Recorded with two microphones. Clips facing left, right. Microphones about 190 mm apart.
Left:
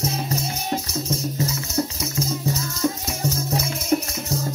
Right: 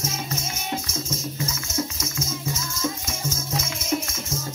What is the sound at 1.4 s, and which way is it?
Music, 35° left (ahead or behind).